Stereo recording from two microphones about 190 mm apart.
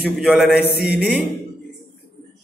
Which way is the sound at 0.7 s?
60° left (ahead or behind).